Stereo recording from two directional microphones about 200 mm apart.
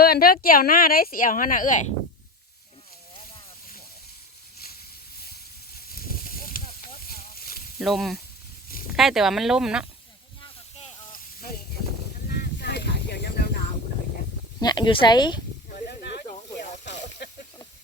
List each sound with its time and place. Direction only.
0.0 s a woman's voice: 50° left (ahead or behind)
6.2 s snake: 45° left (ahead or behind)
7.1 s a sound: 45° left (ahead or behind)
7.8 s speech: centre (ahead or behind)
10.4 s snake: 35° left (ahead or behind)
12.3 s a sound: 55° left (ahead or behind)
14.6 s speech: 20° left (ahead or behind)
15.9 s snake: 55° left (ahead or behind)